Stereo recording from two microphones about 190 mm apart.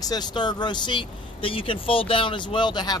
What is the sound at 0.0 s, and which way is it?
Speech, 20° left (ahead or behind).